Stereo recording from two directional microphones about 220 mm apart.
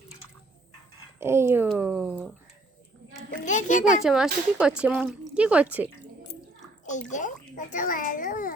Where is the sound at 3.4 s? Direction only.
35° left (ahead or behind).